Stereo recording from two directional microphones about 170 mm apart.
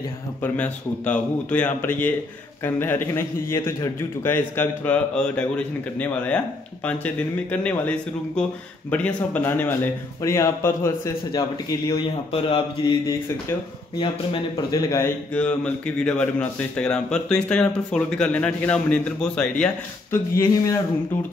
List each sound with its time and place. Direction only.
0.4 s speech: 10° left (ahead or behind)
11.9 s speech: 35° left (ahead or behind)
13.0 s speech: 20° left (ahead or behind)
20.3 s speech: 20° left (ahead or behind)